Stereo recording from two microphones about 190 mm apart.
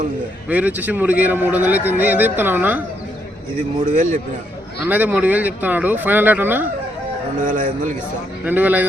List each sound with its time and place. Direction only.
0.4 s speech: 10° right (ahead or behind)
3.9 s a man's voice: 40° right (ahead or behind)
4.9 s speech: 10° right (ahead or behind)
7.4 s a man's voice: 45° right (ahead or behind)
8.4 s speech: 10° right (ahead or behind)